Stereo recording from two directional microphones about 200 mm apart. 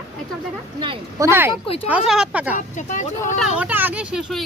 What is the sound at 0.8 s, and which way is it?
Speech, 20° right (ahead or behind).